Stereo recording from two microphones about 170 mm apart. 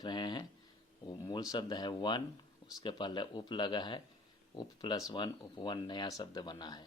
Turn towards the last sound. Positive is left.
turn(degrees=25)  # may be behind; listen again after turning